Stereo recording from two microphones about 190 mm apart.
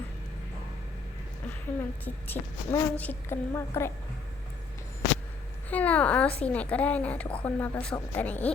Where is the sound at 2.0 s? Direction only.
10° left (ahead or behind).